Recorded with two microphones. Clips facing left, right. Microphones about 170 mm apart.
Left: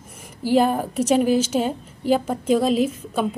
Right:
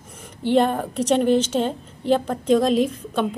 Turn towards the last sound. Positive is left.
turn(degrees=5)  # may be behind; listen again after turning